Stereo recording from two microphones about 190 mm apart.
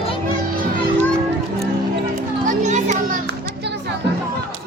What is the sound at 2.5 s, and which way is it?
Children playing, 40° right (ahead or behind).